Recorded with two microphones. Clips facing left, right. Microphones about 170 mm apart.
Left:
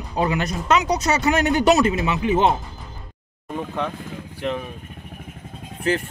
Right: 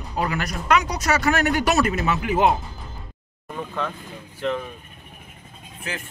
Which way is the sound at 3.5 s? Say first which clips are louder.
Left 2 dB; 15° left (ahead or behind).